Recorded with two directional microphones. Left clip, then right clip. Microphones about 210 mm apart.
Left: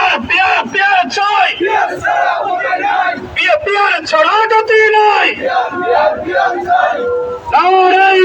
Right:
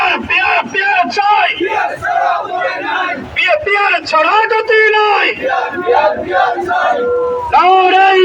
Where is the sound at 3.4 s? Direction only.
Centre (ahead or behind).